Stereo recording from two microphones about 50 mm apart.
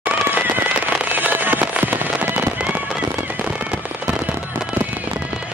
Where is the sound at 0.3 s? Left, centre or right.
Right.